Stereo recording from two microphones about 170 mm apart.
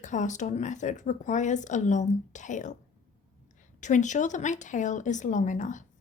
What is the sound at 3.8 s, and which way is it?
Speech, 45° left (ahead or behind).